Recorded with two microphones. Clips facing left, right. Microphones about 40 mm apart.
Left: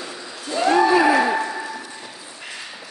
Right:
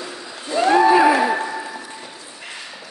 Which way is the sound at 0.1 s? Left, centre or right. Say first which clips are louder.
Right 4 dB; right.